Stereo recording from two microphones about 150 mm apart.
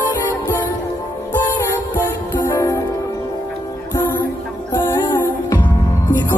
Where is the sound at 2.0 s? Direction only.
15° left (ahead or behind).